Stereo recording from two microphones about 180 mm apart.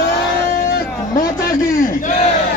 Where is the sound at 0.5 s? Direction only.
55° left (ahead or behind).